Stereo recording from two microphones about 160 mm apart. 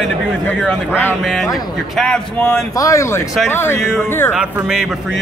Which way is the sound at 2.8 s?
20° left (ahead or behind).